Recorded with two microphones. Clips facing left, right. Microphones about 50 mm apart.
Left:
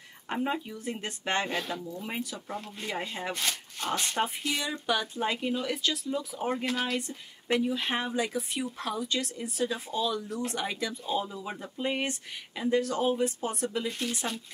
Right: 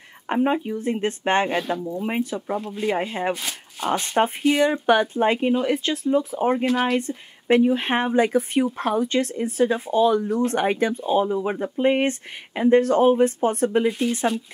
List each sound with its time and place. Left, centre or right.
0.3 s speech: right
2.5 s speech: centre
2.9 s speech: right
3.3 s speech: centre
4.4 s speech: right
4.8 s speech: right
7.5 s speech: right
13.8 s speech: centre